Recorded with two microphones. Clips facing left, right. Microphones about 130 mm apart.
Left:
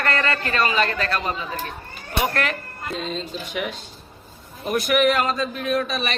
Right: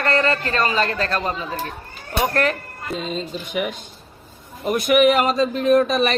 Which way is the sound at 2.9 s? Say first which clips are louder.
Right 3 dB; 10° right (ahead or behind).